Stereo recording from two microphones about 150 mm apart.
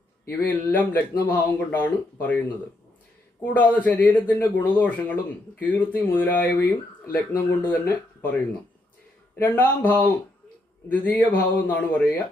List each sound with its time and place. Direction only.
0.3 s speech: 10° left (ahead or behind)
9.3 s speech: 15° left (ahead or behind)